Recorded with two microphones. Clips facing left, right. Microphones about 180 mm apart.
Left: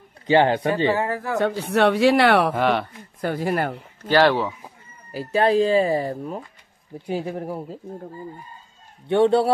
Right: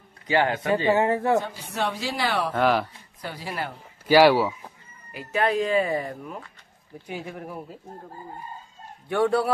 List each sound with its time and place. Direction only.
0.3 s a man's voice: 30° left (ahead or behind)
0.8 s speech: 25° right (ahead or behind)
1.4 s speech: 70° left (ahead or behind)
2.5 s speech: centre (ahead or behind)
3.2 s speech: 50° left (ahead or behind)
4.1 s speech: 10° right (ahead or behind)
5.1 s speech: 35° left (ahead or behind)
9.0 s a man's voice: 25° left (ahead or behind)